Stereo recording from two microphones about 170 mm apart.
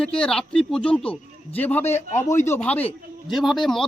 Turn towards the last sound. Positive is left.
turn(degrees=0)  # may be behind; listen again after turning